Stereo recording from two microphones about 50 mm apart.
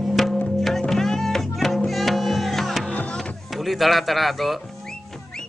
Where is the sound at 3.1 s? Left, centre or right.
Centre.